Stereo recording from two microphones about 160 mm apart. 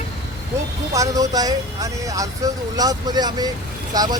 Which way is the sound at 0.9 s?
20° right (ahead or behind).